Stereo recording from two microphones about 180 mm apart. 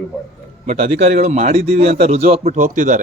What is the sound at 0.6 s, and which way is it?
A man's voice, 40° right (ahead or behind).